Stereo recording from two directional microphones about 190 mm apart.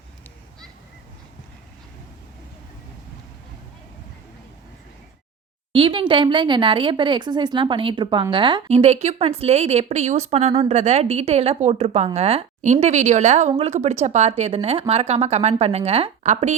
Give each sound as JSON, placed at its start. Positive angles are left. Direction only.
{"t": 5.7, "sound": "speech", "side_deg": -25}